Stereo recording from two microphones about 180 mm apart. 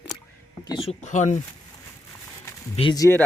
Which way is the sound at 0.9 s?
40° left (ahead or behind).